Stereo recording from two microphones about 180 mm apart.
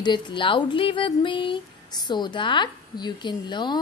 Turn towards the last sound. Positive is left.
turn(degrees=25)  # may be behind; listen again after turning